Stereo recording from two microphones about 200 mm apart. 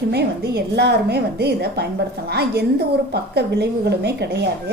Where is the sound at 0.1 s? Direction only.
55° right (ahead or behind).